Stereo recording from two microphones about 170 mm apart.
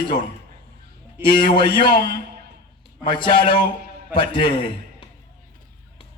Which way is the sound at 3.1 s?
30° left (ahead or behind).